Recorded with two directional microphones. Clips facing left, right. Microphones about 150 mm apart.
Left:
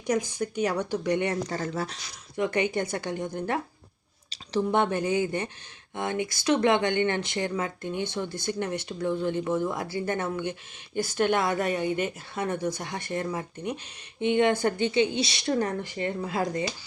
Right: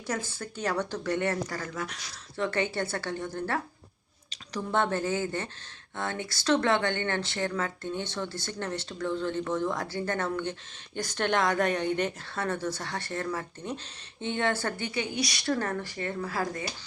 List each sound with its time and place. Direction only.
0.1 s speech: 15° left (ahead or behind)
1.5 s speech: 30° left (ahead or behind)
2.3 s speech: 15° left (ahead or behind)
4.7 s speech: 15° left (ahead or behind)